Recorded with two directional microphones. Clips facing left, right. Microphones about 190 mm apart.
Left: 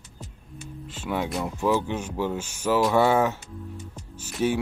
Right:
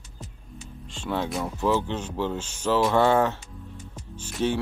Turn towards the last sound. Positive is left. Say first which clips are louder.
# left 1 dB
turn(degrees=10)  # may be behind; listen again after turning